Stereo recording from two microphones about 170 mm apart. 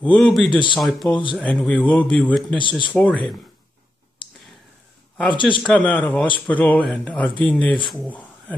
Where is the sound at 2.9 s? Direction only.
10° left (ahead or behind).